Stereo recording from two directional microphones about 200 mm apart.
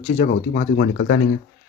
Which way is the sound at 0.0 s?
30° left (ahead or behind).